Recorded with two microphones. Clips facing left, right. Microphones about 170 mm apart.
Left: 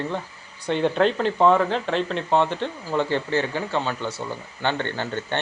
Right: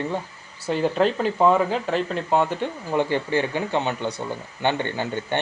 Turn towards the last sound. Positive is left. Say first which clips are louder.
# right 1 dB
turn(degrees=-15)  # may be behind; listen again after turning